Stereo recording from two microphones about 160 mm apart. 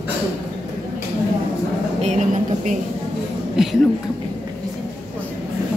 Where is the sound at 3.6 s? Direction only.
5° right (ahead or behind).